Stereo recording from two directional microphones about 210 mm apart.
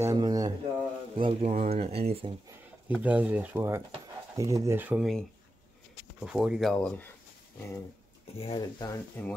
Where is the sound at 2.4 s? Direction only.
10° right (ahead or behind).